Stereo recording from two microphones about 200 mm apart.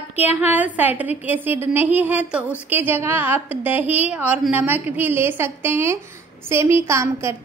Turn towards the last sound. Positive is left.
turn(degrees=-15)  # may be behind; listen again after turning